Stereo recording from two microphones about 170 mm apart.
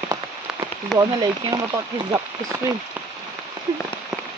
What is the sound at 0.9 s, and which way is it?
Speech, 25° right (ahead or behind).